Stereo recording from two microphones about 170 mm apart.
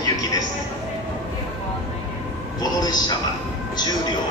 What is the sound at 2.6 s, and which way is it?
Speech, 25° left (ahead or behind).